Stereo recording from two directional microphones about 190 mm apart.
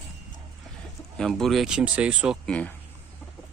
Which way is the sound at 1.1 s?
5° left (ahead or behind).